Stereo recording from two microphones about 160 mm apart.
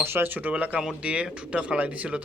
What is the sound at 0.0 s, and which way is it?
Speech, 15° right (ahead or behind).